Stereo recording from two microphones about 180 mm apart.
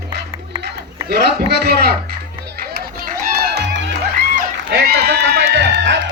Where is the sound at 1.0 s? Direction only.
65° right (ahead or behind).